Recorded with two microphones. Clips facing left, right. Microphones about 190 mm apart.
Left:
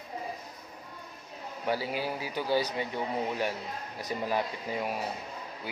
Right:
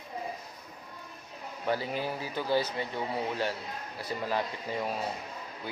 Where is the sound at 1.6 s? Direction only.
10° left (ahead or behind).